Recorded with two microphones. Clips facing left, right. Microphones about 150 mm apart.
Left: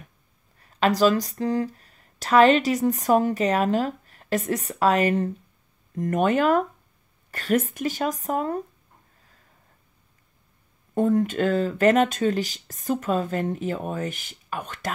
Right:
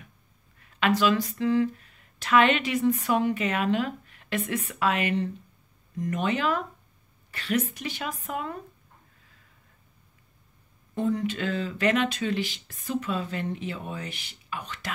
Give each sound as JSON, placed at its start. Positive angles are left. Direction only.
{"t": 0.6, "sound": "speech", "side_deg": 35}
{"t": 11.0, "sound": "speech", "side_deg": 50}